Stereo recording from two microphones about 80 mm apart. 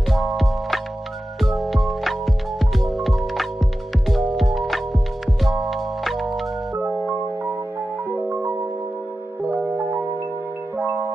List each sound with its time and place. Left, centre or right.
0.1 s music: centre
10.8 s music: right